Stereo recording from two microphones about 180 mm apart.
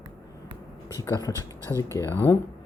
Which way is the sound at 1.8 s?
15° left (ahead or behind).